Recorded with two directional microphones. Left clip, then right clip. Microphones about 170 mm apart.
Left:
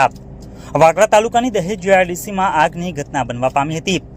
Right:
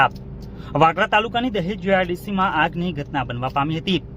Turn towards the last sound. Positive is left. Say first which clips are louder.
# left 5 dB
turn(degrees=15)  # may be behind; listen again after turning